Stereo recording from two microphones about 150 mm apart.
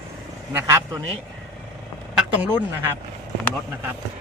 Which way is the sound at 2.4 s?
15° right (ahead or behind).